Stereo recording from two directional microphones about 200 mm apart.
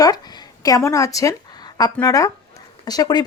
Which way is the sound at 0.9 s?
15° left (ahead or behind).